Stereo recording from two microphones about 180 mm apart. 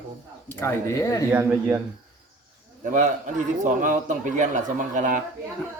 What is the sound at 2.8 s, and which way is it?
A man's voice, 45° right (ahead or behind).